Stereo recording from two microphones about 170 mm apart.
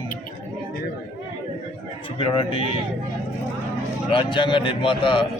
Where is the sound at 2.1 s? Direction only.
30° left (ahead or behind).